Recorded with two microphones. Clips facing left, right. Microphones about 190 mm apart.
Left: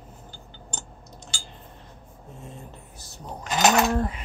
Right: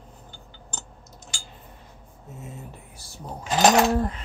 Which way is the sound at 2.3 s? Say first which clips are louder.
Right 2 dB; 5° right (ahead or behind).